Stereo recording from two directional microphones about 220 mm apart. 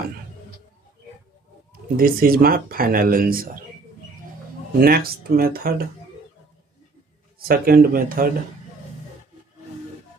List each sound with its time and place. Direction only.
1.7 s speech: 40° right (ahead or behind)
4.8 s speech: 40° right (ahead or behind)
7.3 s speech: 40° right (ahead or behind)